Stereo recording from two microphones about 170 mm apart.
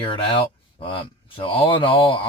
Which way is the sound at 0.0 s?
30° left (ahead or behind).